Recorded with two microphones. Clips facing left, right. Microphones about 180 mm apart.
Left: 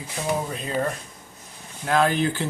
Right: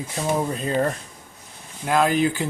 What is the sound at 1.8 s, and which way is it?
Speech, 10° right (ahead or behind).